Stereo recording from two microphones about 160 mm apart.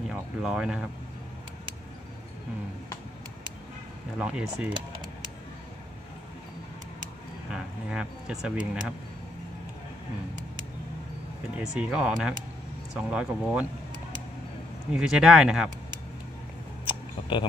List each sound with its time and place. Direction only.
0.1 s speech: 5° right (ahead or behind)
4.2 s speech: 5° right (ahead or behind)
7.5 s speech: 5° right (ahead or behind)
11.5 s speech: 5° right (ahead or behind)
14.9 s speech: 5° right (ahead or behind)
16.8 s a sound: 30° left (ahead or behind)